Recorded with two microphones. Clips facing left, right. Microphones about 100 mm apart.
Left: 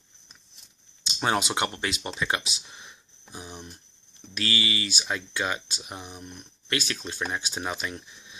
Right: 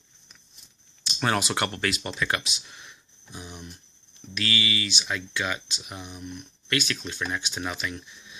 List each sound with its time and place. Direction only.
1.0 s speech: 20° left (ahead or behind)